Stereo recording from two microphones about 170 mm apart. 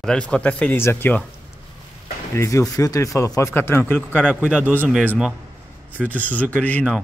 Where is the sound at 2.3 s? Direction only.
15° left (ahead or behind).